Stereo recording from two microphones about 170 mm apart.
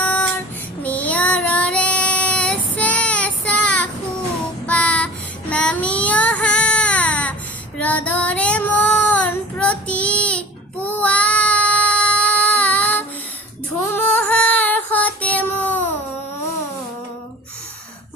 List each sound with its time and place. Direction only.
0.0 s child singing: 10° left (ahead or behind)
13.8 s female singing: 10° left (ahead or behind)